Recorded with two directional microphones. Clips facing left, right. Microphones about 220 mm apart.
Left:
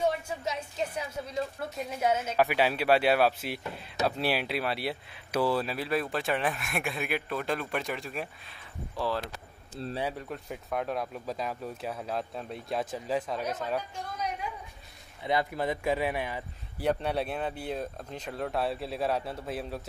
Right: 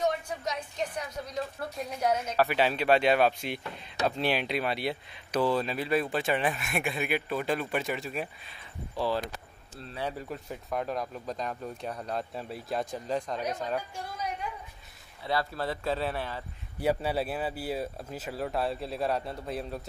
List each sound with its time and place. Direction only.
0.0 s a sound: 5° left (ahead or behind)
1.1 s speech: centre (ahead or behind)
15.2 s speech: 20° left (ahead or behind)
16.8 s speech: 5° right (ahead or behind)